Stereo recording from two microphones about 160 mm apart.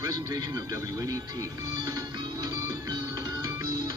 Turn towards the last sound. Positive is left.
turn(degrees=-25)  # may be behind; listen again after turning